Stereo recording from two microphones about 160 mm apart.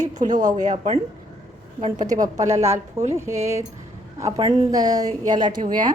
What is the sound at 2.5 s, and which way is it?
Speech, 45° right (ahead or behind).